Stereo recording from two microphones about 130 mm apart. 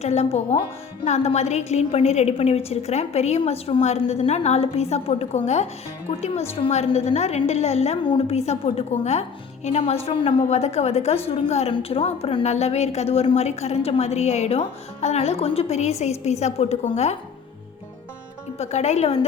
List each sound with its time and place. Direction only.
0.0 s a woman's voice: 60° left (ahead or behind)
8.0 s a woman's voice: 45° left (ahead or behind)
18.5 s a woman's voice: 55° left (ahead or behind)